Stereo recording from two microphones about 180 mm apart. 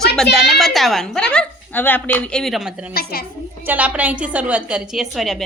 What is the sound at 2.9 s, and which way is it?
Speech, 60° left (ahead or behind).